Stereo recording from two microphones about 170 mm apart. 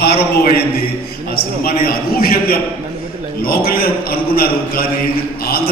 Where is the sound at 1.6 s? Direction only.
60° left (ahead or behind).